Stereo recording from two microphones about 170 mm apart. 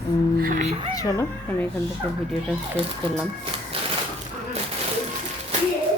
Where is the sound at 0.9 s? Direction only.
20° left (ahead or behind).